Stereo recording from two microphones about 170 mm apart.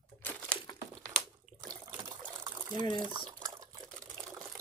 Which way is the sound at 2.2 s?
15° right (ahead or behind).